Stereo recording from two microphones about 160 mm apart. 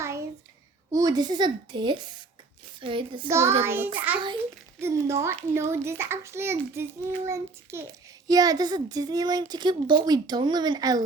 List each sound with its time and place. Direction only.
0.0 s a sound: 15° right (ahead or behind)
0.9 s a child's voice: 25° right (ahead or behind)
3.2 s a child's voice: 15° right (ahead or behind)